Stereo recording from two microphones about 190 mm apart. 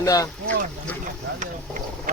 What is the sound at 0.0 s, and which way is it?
Speech, 20° left (ahead or behind).